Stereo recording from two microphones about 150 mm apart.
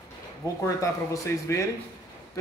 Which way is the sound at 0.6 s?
20° left (ahead or behind).